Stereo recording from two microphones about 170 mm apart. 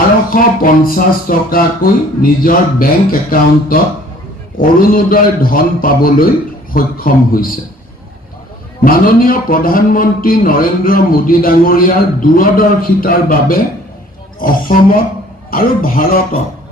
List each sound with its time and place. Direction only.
0.3 s speech: 55° left (ahead or behind)
8.8 s speech: 55° left (ahead or behind)